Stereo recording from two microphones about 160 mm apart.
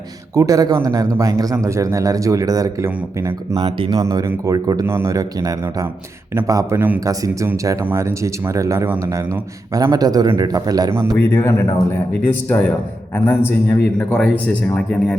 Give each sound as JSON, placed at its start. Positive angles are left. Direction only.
{"t": 0.3, "sound": "speech", "side_deg": -20}
{"t": 3.7, "sound": "speech", "side_deg": -30}
{"t": 4.0, "sound": "speech", "side_deg": -20}
{"t": 11.1, "sound": "a man's voice", "side_deg": 10}